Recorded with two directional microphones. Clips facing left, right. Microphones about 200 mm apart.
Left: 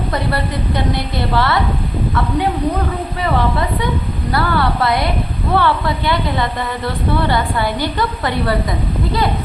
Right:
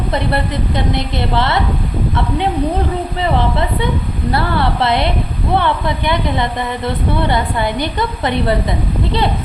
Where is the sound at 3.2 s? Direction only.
25° right (ahead or behind).